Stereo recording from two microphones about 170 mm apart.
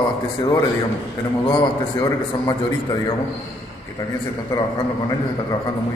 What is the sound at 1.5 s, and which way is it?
A man's voice, 25° left (ahead or behind).